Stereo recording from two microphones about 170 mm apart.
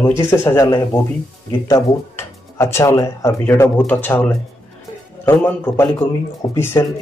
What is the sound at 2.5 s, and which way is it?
Speech, 15° left (ahead or behind).